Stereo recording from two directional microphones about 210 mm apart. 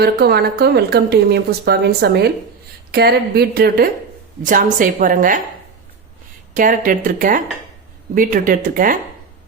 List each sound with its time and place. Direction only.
0.0 s a woman's voice: 50° right (ahead or behind)
6.5 s a woman's voice: 40° right (ahead or behind)